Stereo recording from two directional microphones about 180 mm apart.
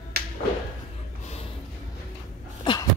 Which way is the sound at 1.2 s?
35° left (ahead or behind).